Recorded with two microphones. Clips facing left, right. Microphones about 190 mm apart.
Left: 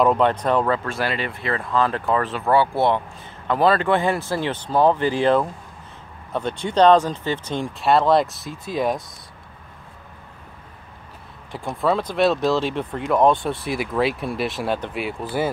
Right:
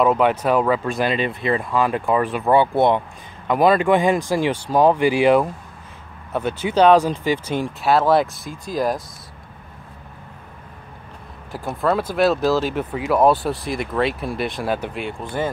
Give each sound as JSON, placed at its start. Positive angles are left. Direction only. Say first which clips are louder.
{"t": 0.0, "sound": "speech", "louder": "right 1 dB", "side_deg": -5}
{"t": 11.5, "sound": "speech", "louder": "right 1 dB", "side_deg": 0}